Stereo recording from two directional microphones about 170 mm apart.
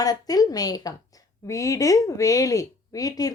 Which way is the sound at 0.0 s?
20° left (ahead or behind).